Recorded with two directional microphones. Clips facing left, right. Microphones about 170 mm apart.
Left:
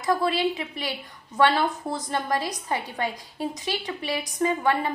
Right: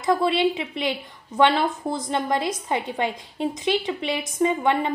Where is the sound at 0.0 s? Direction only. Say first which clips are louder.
Right 3 dB; 20° right (ahead or behind).